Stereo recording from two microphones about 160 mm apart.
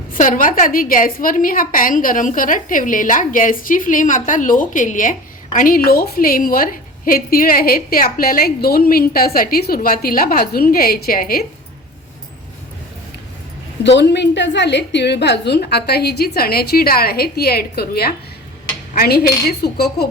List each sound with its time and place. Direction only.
0.1 s a woman's voice: 55° left (ahead or behind)
13.8 s a woman's voice: 90° left; by 19.8 s 75° left (ahead or behind)